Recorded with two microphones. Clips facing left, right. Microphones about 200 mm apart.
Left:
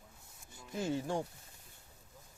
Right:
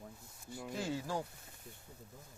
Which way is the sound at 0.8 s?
20° left (ahead or behind).